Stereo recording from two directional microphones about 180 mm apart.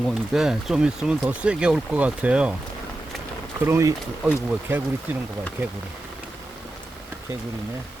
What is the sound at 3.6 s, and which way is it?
Speech, 15° right (ahead or behind).